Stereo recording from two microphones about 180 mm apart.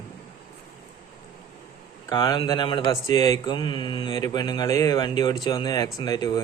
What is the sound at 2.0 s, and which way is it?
A man's voice, 20° left (ahead or behind).